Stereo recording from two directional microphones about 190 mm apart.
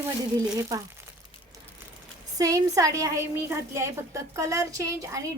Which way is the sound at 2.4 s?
20° right (ahead or behind).